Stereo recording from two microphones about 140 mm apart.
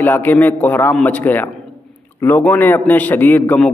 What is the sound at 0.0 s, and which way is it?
A man's voice, 15° left (ahead or behind).